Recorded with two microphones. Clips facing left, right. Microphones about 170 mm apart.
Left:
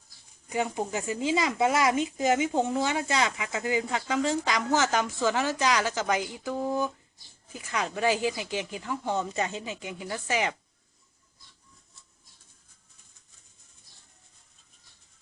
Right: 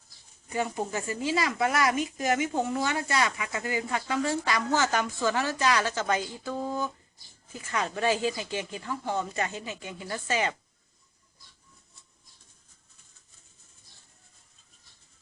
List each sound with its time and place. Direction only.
0.5 s speech: 15° left (ahead or behind)